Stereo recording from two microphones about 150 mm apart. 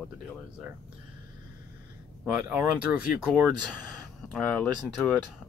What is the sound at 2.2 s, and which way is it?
Speech, 10° right (ahead or behind).